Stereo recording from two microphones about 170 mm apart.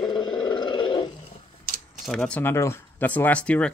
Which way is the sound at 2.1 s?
5° left (ahead or behind).